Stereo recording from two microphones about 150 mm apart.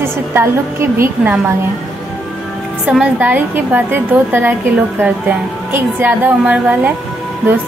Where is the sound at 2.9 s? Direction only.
10° right (ahead or behind).